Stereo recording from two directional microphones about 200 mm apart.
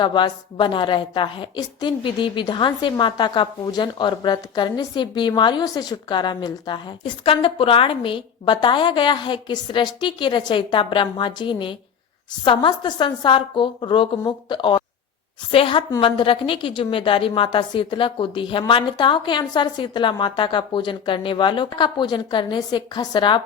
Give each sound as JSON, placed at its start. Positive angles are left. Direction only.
{"t": 0.0, "sound": "a woman's voice", "side_deg": 25}